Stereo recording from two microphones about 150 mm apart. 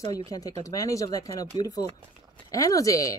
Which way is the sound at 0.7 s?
20° left (ahead or behind).